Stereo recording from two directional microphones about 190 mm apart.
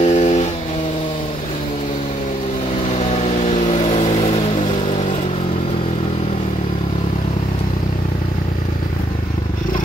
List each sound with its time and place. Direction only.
0.0 s vehicle: 35° left (ahead or behind)
2.9 s vehicle: 35° left (ahead or behind)